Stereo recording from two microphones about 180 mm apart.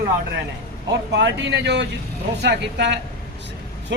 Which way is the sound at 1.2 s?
80° right.